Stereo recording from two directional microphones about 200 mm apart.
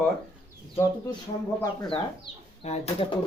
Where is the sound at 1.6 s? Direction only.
25° left (ahead or behind).